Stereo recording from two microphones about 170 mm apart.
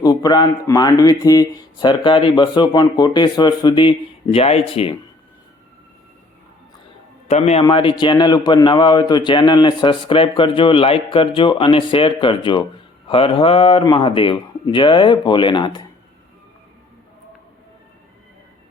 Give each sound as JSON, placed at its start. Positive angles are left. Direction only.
{"t": 0.0, "sound": "a man's voice", "side_deg": 20}
{"t": 7.3, "sound": "a man's voice", "side_deg": 40}
{"t": 7.6, "sound": "a man's voice", "side_deg": 30}